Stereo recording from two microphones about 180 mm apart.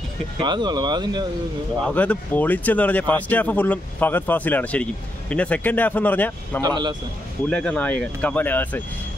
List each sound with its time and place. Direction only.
0.4 s speech: 25° right (ahead or behind)
1.9 s speech: 5° left (ahead or behind)
6.6 s speech: 25° right (ahead or behind)
7.4 s speech: 5° left (ahead or behind)